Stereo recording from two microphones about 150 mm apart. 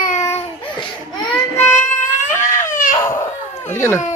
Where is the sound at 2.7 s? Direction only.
60° left (ahead or behind).